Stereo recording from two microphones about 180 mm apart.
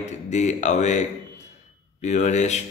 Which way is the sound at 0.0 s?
40° left (ahead or behind).